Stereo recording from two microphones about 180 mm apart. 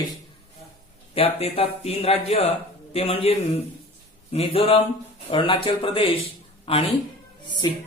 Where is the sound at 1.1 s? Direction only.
35° left (ahead or behind).